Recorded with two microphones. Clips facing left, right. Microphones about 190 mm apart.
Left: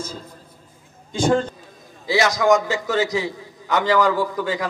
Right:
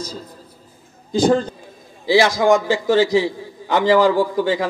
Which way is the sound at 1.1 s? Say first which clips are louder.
Right 3 dB; 35° right (ahead or behind).